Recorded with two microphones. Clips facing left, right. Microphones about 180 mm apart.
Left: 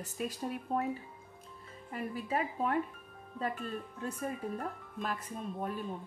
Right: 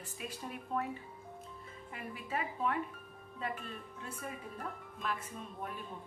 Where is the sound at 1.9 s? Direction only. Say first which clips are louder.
Left 6 dB; 40° left (ahead or behind).